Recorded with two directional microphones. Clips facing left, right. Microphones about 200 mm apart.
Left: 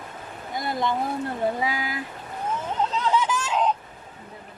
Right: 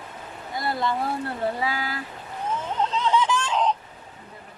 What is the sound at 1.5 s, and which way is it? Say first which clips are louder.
Speech: even; 15° left (ahead or behind).